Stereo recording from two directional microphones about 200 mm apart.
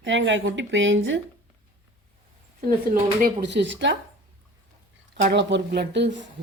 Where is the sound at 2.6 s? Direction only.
45° right (ahead or behind); by 3.9 s 60° right (ahead or behind).